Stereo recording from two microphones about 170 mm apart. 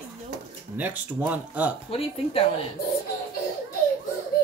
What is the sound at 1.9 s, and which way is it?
Speech, 35° left (ahead or behind).